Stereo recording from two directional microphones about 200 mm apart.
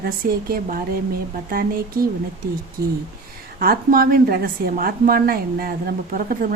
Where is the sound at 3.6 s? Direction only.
45° right (ahead or behind).